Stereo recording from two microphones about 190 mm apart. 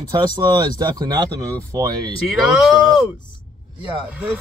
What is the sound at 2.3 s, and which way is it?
Speech, centre (ahead or behind).